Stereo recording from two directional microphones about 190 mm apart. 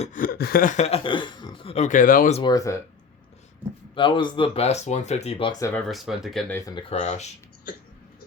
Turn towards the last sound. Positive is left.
turn(degrees=35)  # may be behind; listen again after turning